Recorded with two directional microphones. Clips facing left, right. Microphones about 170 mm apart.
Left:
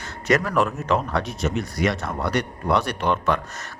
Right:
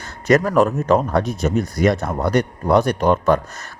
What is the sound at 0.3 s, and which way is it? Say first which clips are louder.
Speech: right 6 dB; 40° right (ahead or behind).